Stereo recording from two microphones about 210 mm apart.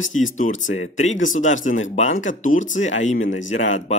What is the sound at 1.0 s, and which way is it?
Speech, 35° left (ahead or behind).